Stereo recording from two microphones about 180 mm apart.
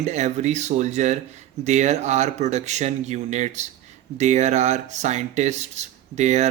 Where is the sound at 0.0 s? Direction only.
40° right (ahead or behind).